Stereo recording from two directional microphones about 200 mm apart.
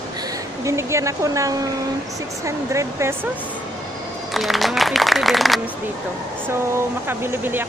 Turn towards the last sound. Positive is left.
turn(degrees=-10)  # may be behind; listen again after turning